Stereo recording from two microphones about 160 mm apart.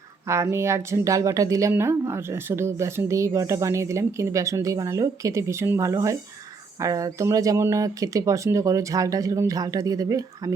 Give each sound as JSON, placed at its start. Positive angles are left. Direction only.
{"t": 0.3, "sound": "speech", "side_deg": -15}